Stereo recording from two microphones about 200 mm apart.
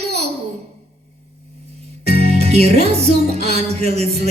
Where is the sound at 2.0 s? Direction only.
30° right (ahead or behind).